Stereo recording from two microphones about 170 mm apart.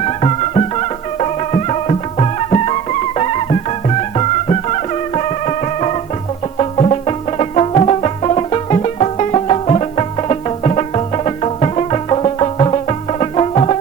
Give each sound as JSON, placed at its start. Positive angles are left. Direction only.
{"t": 0.0, "sound": "music", "side_deg": 35}